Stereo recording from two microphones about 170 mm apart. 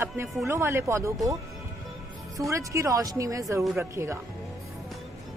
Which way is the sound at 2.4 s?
20° right (ahead or behind).